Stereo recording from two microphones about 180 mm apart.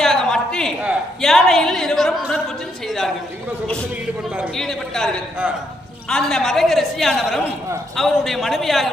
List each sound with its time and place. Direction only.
0.0 s a sound: 5° left (ahead or behind)
0.8 s a woman's voice: 5° right (ahead or behind)
4.0 s a woman's voice: centre (ahead or behind)